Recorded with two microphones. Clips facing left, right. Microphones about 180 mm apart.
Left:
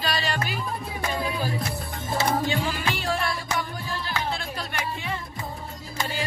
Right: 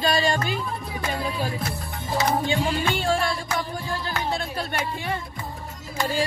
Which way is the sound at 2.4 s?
25° right (ahead or behind).